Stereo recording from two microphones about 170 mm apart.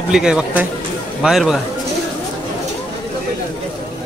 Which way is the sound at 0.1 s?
5° right (ahead or behind).